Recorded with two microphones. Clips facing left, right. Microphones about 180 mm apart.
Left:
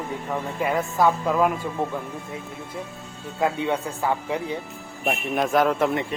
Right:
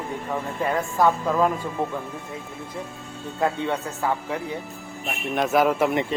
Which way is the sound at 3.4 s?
10° left (ahead or behind).